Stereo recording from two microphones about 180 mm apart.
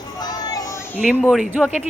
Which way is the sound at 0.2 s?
20° left (ahead or behind).